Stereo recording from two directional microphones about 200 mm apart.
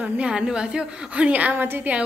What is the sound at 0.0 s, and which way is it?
A woman's voice, 5° right (ahead or behind).